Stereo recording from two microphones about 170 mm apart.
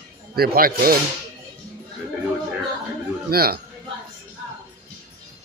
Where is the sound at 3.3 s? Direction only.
65° right (ahead or behind).